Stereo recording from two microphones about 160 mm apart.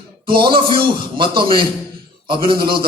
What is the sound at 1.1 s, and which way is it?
Speech, 30° right (ahead or behind).